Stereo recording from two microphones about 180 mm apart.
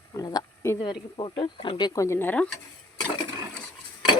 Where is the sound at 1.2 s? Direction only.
30° left (ahead or behind); by 2.4 s 10° left (ahead or behind).